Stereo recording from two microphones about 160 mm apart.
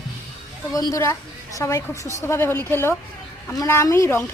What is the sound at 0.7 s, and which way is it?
A woman's voice, 20° left (ahead or behind).